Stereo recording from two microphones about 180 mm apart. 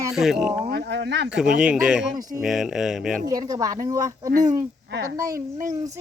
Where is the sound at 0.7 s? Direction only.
70° right (ahead or behind).